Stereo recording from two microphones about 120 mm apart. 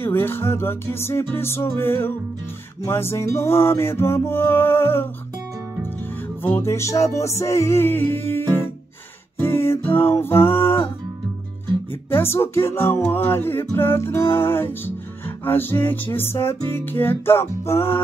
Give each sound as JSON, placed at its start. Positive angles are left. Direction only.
{"t": 0.0, "sound": "music", "side_deg": 20}
{"t": 6.4, "sound": "music", "side_deg": 20}
{"t": 12.1, "sound": "music", "side_deg": 20}